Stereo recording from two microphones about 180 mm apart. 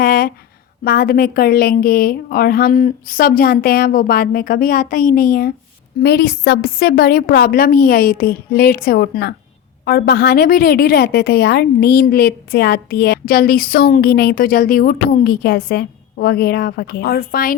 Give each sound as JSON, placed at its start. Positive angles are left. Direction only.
{"t": 0.0, "sound": "a sound", "side_deg": 55}
{"t": 0.9, "sound": "a woman's voice", "side_deg": 55}
{"t": 6.0, "sound": "a woman's voice", "side_deg": 65}